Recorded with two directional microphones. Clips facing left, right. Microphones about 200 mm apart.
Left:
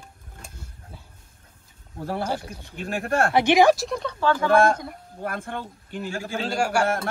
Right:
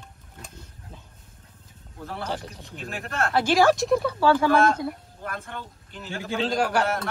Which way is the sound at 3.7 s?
Centre (ahead or behind).